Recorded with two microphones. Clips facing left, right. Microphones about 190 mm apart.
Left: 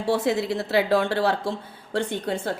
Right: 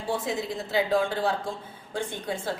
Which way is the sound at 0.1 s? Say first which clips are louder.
Left 6 dB; 70° left (ahead or behind).